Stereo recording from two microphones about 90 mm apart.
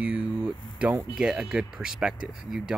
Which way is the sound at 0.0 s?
10° right (ahead or behind).